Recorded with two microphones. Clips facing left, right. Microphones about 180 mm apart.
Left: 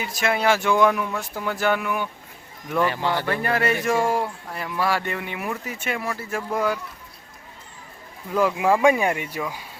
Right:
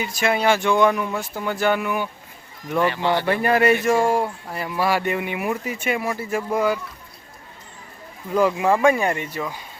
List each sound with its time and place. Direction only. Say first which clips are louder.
0.0 s speech: right 2 dB; centre (ahead or behind)
3.2 s speech: right 8 dB; 15° right (ahead or behind)
3.8 s speech: right 3 dB; centre (ahead or behind)
8.3 s speech: right 2 dB; centre (ahead or behind)